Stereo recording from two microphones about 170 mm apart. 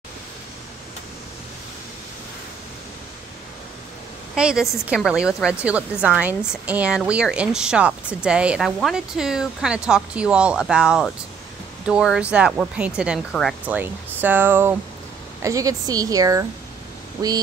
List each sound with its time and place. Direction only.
4.4 s speech: 5° right (ahead or behind)
13.7 s a woman's voice: 10° right (ahead or behind)